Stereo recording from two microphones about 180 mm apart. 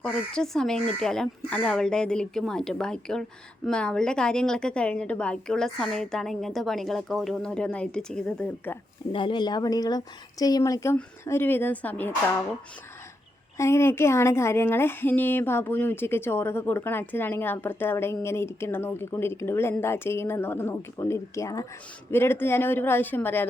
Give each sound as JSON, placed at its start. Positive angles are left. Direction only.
{"t": 0.0, "sound": "a woman's voice", "side_deg": 5}
{"t": 9.1, "sound": "a woman's voice", "side_deg": 25}
{"t": 13.6, "sound": "speech", "side_deg": 15}